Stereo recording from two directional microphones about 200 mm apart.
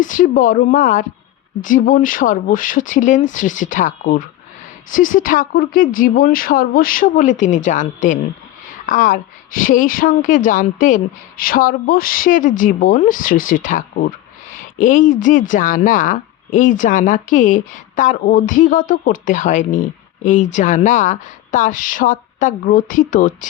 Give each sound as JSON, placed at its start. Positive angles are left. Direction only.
{"t": 0.0, "sound": "a woman's voice", "side_deg": 40}
{"t": 14.5, "sound": "a sound", "side_deg": 40}
{"t": 15.2, "sound": "speech", "side_deg": 40}